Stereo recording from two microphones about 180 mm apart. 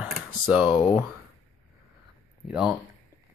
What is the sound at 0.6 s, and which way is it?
Speech, 25° left (ahead or behind).